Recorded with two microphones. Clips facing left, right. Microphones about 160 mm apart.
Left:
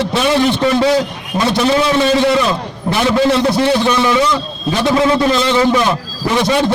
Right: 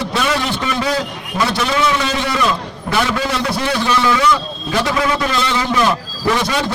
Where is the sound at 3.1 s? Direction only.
30° left (ahead or behind).